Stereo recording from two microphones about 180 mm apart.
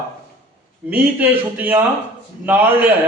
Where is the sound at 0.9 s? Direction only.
10° right (ahead or behind).